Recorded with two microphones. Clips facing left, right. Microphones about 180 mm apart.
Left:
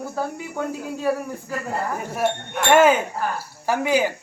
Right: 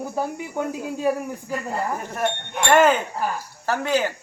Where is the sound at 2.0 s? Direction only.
10° left (ahead or behind).